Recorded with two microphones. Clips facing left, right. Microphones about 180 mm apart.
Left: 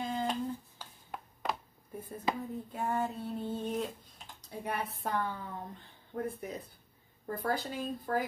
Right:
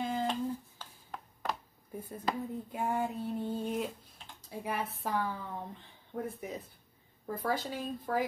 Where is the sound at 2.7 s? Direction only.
10° right (ahead or behind).